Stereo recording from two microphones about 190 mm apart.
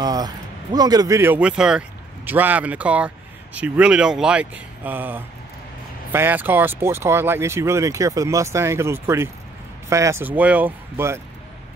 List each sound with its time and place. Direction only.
0.0 s speech: 20° right (ahead or behind)